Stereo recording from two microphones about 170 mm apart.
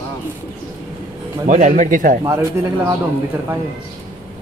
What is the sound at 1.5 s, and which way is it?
Speech, 45° right (ahead or behind).